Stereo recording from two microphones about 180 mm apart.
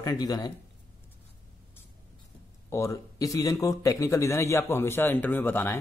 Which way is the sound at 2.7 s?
15° left (ahead or behind).